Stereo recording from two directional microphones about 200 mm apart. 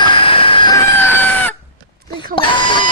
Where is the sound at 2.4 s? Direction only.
20° left (ahead or behind).